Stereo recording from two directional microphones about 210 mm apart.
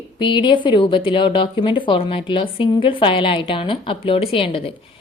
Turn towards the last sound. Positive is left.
turn(degrees=25)  # may be behind; listen again after turning